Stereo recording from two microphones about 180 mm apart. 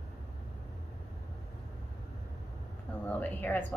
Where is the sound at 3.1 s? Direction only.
10° left (ahead or behind).